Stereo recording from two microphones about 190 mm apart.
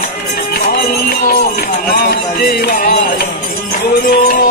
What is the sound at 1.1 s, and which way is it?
Music, 50° left (ahead or behind).